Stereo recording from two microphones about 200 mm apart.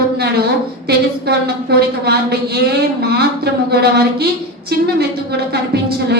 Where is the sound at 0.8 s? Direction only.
55° right (ahead or behind).